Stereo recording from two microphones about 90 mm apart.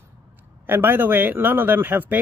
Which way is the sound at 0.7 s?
25° right (ahead or behind).